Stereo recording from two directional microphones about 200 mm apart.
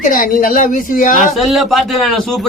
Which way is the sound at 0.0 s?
40° left (ahead or behind).